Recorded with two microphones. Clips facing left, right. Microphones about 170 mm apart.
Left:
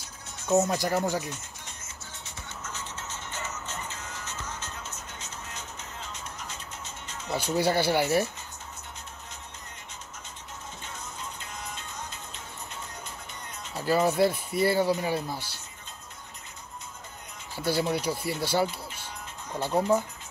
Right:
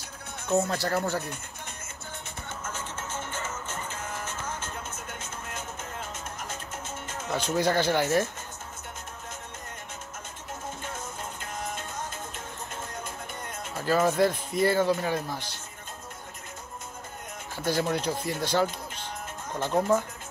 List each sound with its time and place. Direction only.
0.6 s speech: 15° left (ahead or behind)
2.6 s music: 50° right (ahead or behind)
7.3 s speech: 10° left (ahead or behind)
10.8 s music: 50° right (ahead or behind)
13.7 s speech: 10° left (ahead or behind)
17.6 s speech: 10° left (ahead or behind)